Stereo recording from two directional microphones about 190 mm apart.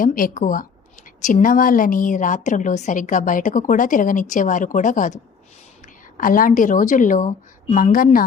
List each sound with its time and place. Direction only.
0.0 s a woman's voice: 45° left (ahead or behind)